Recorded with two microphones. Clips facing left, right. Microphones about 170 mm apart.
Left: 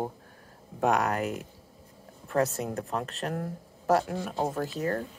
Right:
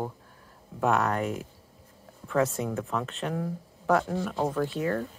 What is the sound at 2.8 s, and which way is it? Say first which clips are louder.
Speech: right 1 dB; 40° left (ahead or behind).